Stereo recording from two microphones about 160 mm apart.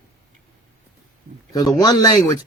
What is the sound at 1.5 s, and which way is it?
Speech, 25° left (ahead or behind).